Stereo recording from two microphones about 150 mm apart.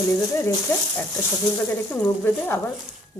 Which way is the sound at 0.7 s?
15° left (ahead or behind).